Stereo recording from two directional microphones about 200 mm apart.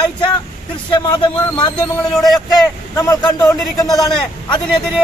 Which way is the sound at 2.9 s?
15° left (ahead or behind).